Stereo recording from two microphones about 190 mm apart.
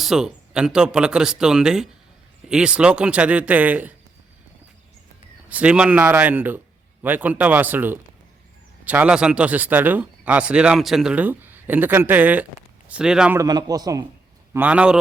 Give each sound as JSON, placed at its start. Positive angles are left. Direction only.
{"t": 0.0, "sound": "speech", "side_deg": -5}
{"t": 5.5, "sound": "speech", "side_deg": -5}
{"t": 13.4, "sound": "a man's voice", "side_deg": -20}
{"t": 14.5, "sound": "speech", "side_deg": -10}